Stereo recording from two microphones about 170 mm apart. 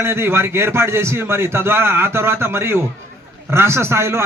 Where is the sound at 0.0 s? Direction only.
15° right (ahead or behind).